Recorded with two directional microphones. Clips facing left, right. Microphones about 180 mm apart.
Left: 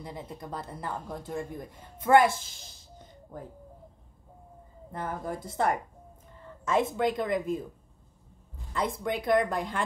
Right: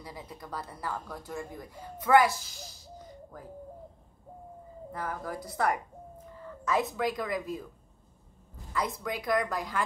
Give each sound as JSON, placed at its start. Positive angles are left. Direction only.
{"t": 0.0, "sound": "speech", "side_deg": 25}
{"t": 4.9, "sound": "speech", "side_deg": 25}
{"t": 8.7, "sound": "speech", "side_deg": 25}